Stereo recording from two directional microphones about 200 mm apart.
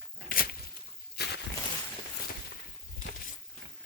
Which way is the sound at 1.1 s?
55° left (ahead or behind).